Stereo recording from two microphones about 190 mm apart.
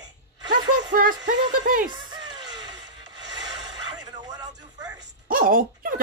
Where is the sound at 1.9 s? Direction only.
25° right (ahead or behind).